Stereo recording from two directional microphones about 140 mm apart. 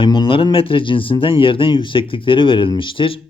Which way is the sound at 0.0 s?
35° left (ahead or behind).